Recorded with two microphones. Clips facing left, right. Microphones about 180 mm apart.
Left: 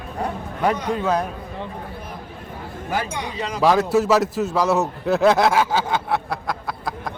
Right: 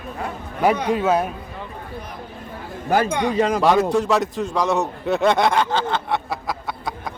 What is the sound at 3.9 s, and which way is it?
A man's voice, 5° left (ahead or behind).